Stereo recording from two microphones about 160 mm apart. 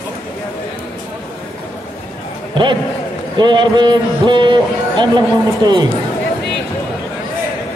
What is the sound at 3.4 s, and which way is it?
A man's voice, 30° right (ahead or behind).